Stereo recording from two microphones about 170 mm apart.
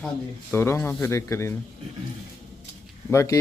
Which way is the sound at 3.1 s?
15° left (ahead or behind).